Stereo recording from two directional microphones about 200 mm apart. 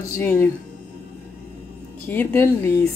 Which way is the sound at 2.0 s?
10° left (ahead or behind).